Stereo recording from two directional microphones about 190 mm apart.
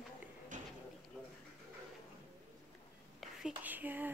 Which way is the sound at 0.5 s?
40° right (ahead or behind).